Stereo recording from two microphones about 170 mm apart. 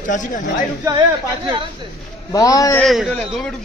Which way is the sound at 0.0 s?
50° left (ahead or behind).